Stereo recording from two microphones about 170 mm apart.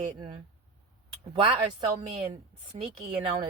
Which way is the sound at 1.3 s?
30° right (ahead or behind).